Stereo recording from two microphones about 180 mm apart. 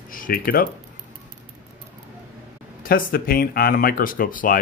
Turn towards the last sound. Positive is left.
turn(degrees=50)  # may be behind; listen again after turning